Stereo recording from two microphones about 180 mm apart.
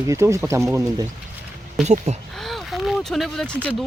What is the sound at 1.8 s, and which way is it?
Speech, 40° right (ahead or behind).